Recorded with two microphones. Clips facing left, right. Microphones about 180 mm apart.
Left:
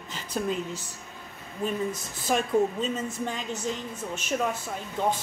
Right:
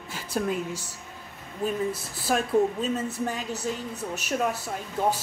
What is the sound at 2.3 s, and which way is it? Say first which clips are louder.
A woman's voice: right 1 dB; 5° right (ahead or behind).